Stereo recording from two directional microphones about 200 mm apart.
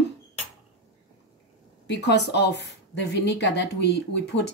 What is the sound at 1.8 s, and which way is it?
Speech, 60° left (ahead or behind).